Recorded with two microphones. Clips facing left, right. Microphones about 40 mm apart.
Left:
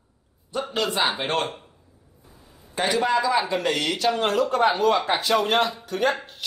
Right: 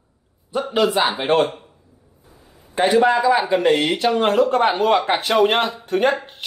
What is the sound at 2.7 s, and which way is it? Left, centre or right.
A man's voice, right.